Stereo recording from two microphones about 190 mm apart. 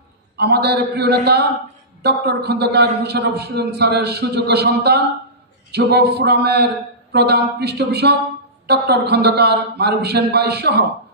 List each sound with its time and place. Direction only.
0.4 s a man's voice: 60° right (ahead or behind)